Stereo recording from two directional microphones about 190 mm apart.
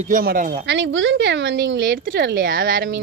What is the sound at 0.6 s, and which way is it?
Speech, 70° right (ahead or behind).